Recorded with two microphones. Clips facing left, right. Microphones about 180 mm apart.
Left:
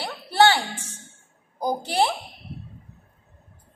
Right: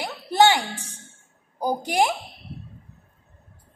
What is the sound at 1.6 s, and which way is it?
Speech, 10° right (ahead or behind).